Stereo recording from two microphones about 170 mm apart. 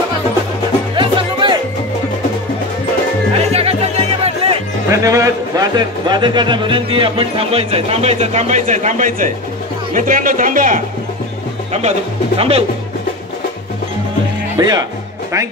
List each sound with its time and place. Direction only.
0.9 s music: 30° right (ahead or behind)
3.5 s music: 40° right (ahead or behind)
4.9 s a man's voice: 20° right (ahead or behind); by 10.8 s 50° right (ahead or behind)
12.4 s a man's voice: 35° right (ahead or behind)
14.6 s speech: 25° right (ahead or behind)